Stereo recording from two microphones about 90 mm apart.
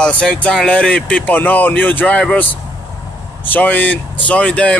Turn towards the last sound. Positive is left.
turn(degrees=10)  # may be behind; listen again after turning